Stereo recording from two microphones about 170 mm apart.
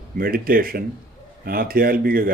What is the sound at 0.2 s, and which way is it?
A man's voice, 60° right (ahead or behind).